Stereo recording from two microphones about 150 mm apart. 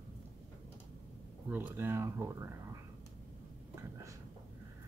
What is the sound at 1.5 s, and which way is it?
Speech, 15° right (ahead or behind).